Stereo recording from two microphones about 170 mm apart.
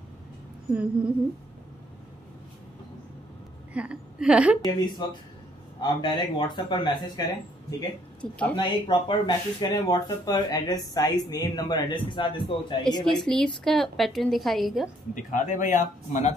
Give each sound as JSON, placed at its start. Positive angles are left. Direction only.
{"t": 0.7, "sound": "a woman's voice", "side_deg": -5}
{"t": 3.7, "sound": "a woman's voice", "side_deg": -5}
{"t": 4.6, "sound": "speech", "side_deg": 25}
{"t": 8.2, "sound": "speech", "side_deg": 5}
{"t": 8.5, "sound": "speech", "side_deg": 30}
{"t": 13.2, "sound": "a woman's voice", "side_deg": 5}
{"t": 15.1, "sound": "speech", "side_deg": 50}